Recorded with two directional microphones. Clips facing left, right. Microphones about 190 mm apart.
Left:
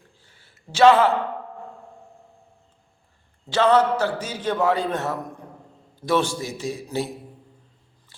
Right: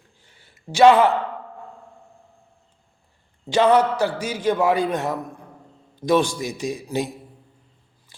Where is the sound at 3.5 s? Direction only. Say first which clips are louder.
Right 1 dB; 15° right (ahead or behind).